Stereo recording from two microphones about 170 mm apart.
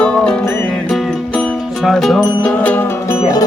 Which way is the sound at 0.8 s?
Centre (ahead or behind).